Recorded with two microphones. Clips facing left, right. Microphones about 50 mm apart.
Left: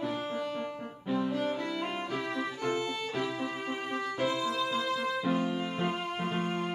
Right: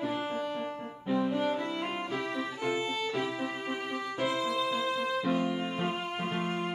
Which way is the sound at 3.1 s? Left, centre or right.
Centre.